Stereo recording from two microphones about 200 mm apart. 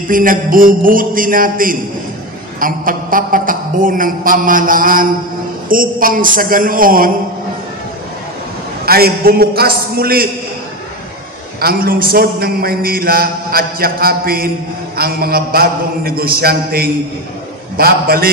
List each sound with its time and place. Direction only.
0.1 s a man's voice: 45° right (ahead or behind)
8.8 s a man's voice: 50° right (ahead or behind)
11.6 s a man's voice: 45° right (ahead or behind)